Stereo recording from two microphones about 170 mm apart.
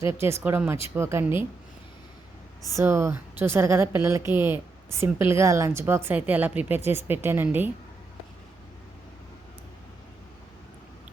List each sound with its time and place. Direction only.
0.0 s a woman's voice: 15° right (ahead or behind)
2.7 s a woman's voice: 15° right (ahead or behind)